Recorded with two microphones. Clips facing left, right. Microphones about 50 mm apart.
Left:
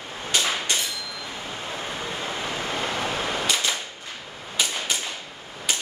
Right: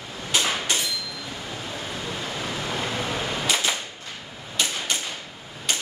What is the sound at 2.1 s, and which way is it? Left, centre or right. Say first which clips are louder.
Waves: even; left.